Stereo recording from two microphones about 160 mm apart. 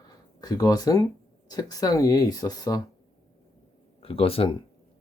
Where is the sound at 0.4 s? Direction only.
25° left (ahead or behind).